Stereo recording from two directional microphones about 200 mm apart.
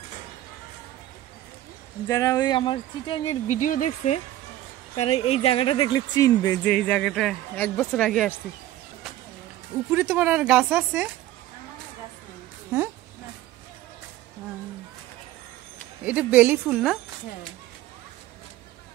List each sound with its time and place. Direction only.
2.0 s speech: 15° left (ahead or behind)
6.6 s a woman's voice: 5° left (ahead or behind)
9.8 s speech: 10° right (ahead or behind)
16.0 s a woman's voice: 5° right (ahead or behind)